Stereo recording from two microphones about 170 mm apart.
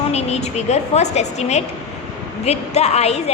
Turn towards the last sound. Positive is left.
turn(degrees=40)  # may be behind; listen again after turning